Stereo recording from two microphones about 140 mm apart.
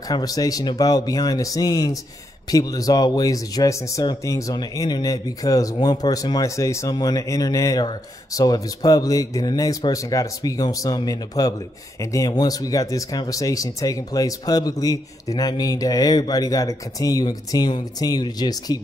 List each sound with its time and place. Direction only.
0.1 s speech: 25° left (ahead or behind)